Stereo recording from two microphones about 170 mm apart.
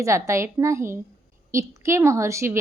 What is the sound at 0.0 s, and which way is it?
A woman's voice, 15° right (ahead or behind).